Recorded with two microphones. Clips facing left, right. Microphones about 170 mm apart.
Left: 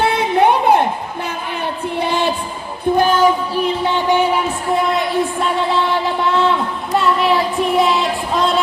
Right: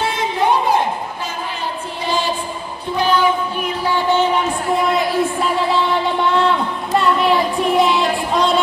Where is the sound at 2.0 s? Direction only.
60° left (ahead or behind).